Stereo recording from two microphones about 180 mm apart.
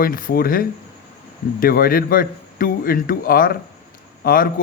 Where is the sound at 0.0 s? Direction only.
50° left (ahead or behind).